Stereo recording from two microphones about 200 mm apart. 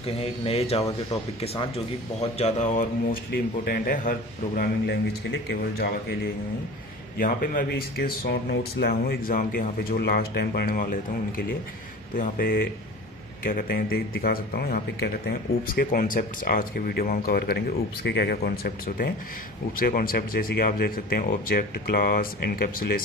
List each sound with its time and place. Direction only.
0.0 s a man's voice: 30° left (ahead or behind)
4.6 s speech: 55° left (ahead or behind)
7.2 s a man's voice: 45° left (ahead or behind)